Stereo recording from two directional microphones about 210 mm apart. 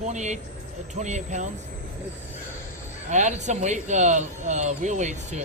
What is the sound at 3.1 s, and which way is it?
Speech, 35° right (ahead or behind).